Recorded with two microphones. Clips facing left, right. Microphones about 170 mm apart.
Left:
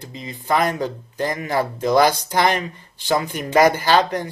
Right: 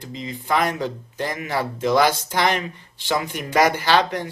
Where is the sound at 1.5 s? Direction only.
45° left (ahead or behind).